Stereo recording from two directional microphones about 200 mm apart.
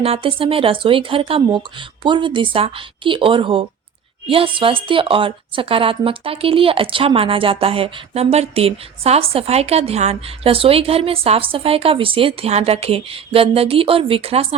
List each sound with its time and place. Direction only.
0.0 s a woman's voice: 30° right (ahead or behind)